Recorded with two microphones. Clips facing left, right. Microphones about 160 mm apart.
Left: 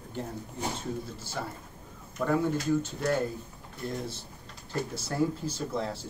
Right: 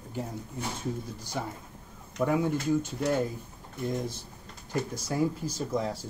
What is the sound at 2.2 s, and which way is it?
Speech, 10° right (ahead or behind).